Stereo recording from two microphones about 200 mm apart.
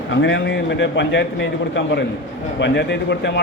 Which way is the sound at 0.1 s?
70° left (ahead or behind).